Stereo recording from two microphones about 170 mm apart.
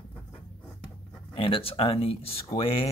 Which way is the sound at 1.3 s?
30° left (ahead or behind).